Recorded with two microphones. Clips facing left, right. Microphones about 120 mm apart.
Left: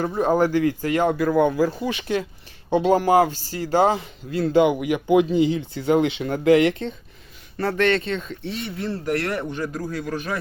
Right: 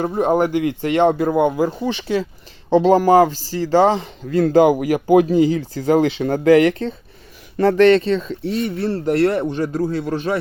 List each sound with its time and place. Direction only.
0.0 s speech: 25° right (ahead or behind)